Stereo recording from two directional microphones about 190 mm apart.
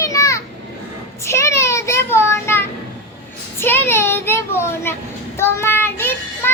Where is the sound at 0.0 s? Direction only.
15° left (ahead or behind).